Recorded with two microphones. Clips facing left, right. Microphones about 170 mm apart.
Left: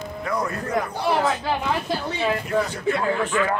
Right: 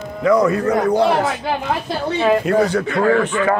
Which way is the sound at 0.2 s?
90° right.